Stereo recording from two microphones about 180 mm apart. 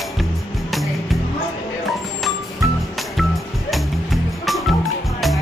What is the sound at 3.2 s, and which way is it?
Music, centre (ahead or behind).